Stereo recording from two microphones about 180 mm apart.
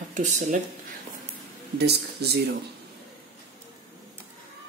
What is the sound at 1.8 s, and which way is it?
Speech, 65° right (ahead or behind).